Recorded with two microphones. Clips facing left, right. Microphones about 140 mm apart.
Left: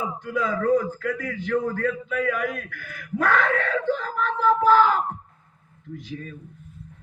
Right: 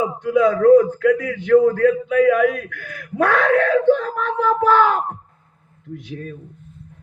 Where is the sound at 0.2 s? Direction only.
70° right (ahead or behind).